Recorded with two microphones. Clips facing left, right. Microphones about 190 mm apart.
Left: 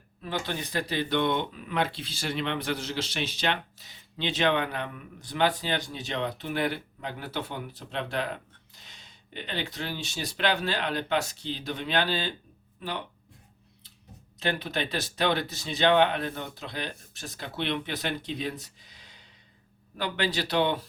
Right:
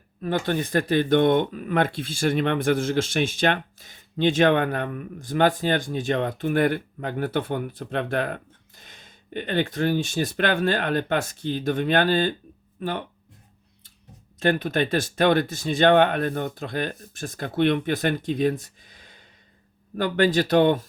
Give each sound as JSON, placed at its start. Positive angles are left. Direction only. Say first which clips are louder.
{"t": 0.2, "sound": "speech", "louder": "right 8 dB", "side_deg": -50}
{"t": 14.3, "sound": "speech", "louder": "right 8 dB", "side_deg": -50}